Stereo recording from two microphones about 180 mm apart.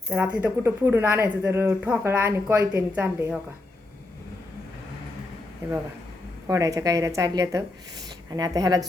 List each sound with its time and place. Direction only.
0.1 s speech: 10° right (ahead or behind)
6.5 s speech: 20° right (ahead or behind)